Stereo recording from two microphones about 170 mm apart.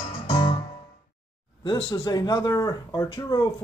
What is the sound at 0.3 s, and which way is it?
Music, 30° left (ahead or behind).